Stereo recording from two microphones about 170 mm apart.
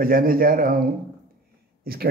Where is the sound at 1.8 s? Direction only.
65° right (ahead or behind).